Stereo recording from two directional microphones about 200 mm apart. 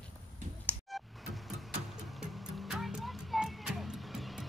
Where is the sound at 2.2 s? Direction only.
5° right (ahead or behind).